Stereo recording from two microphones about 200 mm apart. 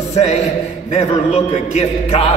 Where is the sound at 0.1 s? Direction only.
35° left (ahead or behind).